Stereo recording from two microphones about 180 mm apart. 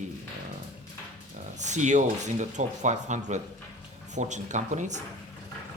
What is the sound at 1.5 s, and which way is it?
Speech, 40° right (ahead or behind).